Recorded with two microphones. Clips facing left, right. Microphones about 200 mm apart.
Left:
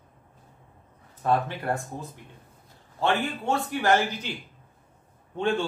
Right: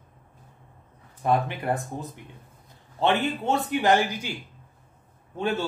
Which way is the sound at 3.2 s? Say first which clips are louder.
Right 2 dB; 20° right (ahead or behind).